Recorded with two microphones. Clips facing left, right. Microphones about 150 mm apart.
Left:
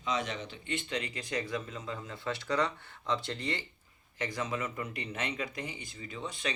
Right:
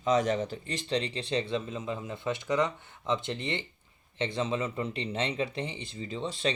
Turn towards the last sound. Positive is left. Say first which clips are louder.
# right 6 dB
turn(degrees=-30)  # may be behind; listen again after turning